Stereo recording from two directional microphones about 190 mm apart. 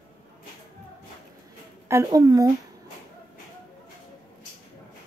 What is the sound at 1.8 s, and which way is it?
Speech, 15° right (ahead or behind).